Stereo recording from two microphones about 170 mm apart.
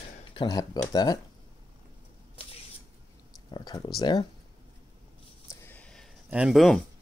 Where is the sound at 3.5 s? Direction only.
25° left (ahead or behind).